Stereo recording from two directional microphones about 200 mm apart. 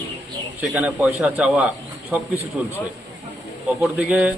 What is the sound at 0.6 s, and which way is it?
A man's voice, 5° right (ahead or behind).